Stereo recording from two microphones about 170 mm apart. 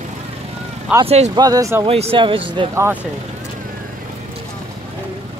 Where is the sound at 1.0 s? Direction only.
40° right (ahead or behind).